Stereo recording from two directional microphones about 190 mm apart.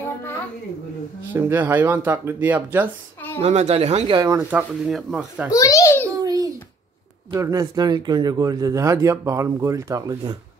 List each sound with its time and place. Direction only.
1.3 s speech: 10° right (ahead or behind)
3.3 s speech: 35° right (ahead or behind)
4.2 s speech: 15° right (ahead or behind)
5.5 s a child's voice: 15° left (ahead or behind)
6.0 s babbling: 20° right (ahead or behind)
7.3 s speech: 15° right (ahead or behind)